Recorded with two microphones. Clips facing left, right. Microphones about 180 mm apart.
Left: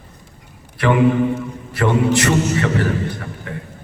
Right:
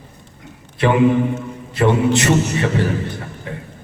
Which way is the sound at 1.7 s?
20° right (ahead or behind).